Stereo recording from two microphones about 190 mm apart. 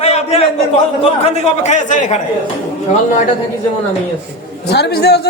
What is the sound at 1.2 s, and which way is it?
Speech, 40° left (ahead or behind).